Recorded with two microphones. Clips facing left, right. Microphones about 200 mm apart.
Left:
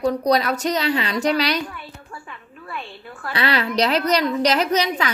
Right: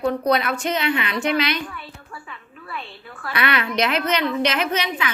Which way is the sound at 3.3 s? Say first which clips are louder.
Left 1 dB; 30° left (ahead or behind).